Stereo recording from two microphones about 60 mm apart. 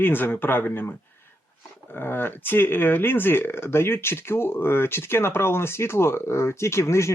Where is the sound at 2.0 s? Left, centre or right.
Left.